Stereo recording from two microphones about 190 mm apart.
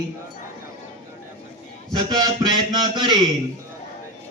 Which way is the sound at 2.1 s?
20° right (ahead or behind).